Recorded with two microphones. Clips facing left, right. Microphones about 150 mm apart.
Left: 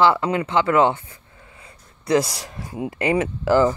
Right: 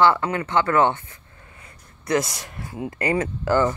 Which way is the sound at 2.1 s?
30° left (ahead or behind).